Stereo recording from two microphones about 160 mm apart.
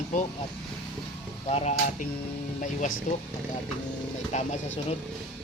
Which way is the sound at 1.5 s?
40° left (ahead or behind).